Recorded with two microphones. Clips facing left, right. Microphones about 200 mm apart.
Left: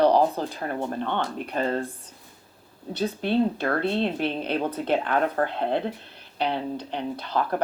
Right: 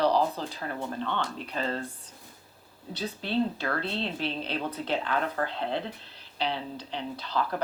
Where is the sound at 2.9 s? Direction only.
55° left (ahead or behind).